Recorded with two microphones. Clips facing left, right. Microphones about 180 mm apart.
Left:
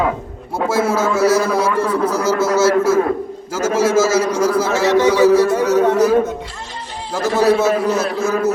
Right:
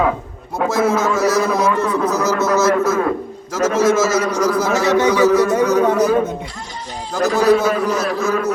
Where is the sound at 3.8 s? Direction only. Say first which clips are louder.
Left 2 dB; 30° left (ahead or behind).